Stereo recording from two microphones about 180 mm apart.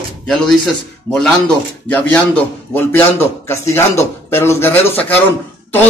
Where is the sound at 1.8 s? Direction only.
10° left (ahead or behind).